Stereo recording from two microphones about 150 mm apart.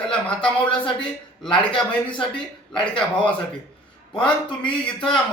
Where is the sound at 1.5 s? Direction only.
35° left (ahead or behind).